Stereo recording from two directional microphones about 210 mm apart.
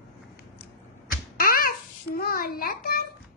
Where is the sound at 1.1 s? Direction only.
40° left (ahead or behind).